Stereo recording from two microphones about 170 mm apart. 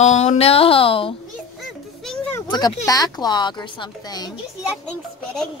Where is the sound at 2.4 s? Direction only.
25° left (ahead or behind).